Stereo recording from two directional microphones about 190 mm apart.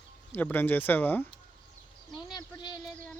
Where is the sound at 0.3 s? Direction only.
10° left (ahead or behind).